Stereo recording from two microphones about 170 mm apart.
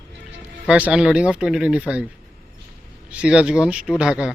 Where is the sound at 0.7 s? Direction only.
5° right (ahead or behind).